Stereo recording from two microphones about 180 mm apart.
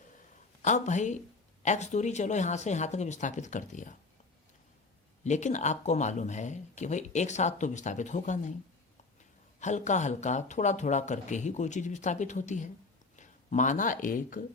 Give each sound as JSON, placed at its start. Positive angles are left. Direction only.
{"t": 0.6, "sound": "speech", "side_deg": 40}
{"t": 5.2, "sound": "speech", "side_deg": 40}
{"t": 9.6, "sound": "speech", "side_deg": 40}